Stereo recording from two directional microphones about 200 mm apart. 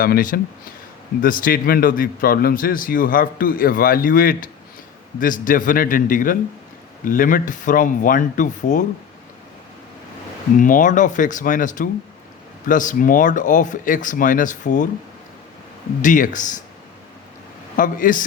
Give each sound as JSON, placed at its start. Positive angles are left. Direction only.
{"t": 0.0, "sound": "a man's voice", "side_deg": 45}
{"t": 10.6, "sound": "speech", "side_deg": 40}
{"t": 16.0, "sound": "speech", "side_deg": 40}
{"t": 17.7, "sound": "speech", "side_deg": 40}